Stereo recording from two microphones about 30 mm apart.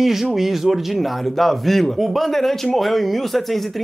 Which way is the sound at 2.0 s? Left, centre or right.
Centre.